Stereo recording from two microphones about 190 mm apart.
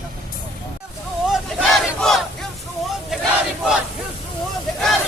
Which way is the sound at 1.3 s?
Centre (ahead or behind).